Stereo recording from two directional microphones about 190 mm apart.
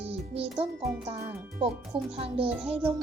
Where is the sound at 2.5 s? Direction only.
5° right (ahead or behind).